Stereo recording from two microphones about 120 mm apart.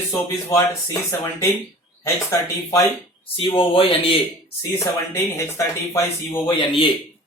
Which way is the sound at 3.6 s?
50° left (ahead or behind).